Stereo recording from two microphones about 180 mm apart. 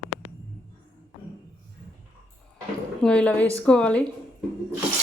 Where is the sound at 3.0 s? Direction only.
5° left (ahead or behind).